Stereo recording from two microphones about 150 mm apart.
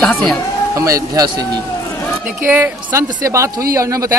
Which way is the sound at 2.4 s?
15° right (ahead or behind).